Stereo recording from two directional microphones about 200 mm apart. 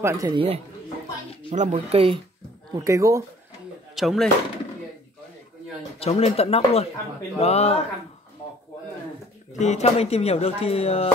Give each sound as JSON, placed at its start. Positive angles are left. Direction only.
{"t": 0.0, "sound": "speech", "side_deg": -15}
{"t": 1.5, "sound": "speech", "side_deg": -35}
{"t": 2.7, "sound": "speech", "side_deg": -15}
{"t": 3.9, "sound": "speech", "side_deg": 0}
{"t": 5.9, "sound": "speech", "side_deg": 30}
{"t": 9.5, "sound": "speech", "side_deg": 35}